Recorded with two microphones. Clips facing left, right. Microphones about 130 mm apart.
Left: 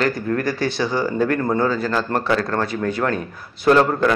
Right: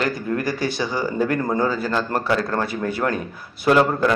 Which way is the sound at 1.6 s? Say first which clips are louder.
Left 2 dB; 15° right (ahead or behind).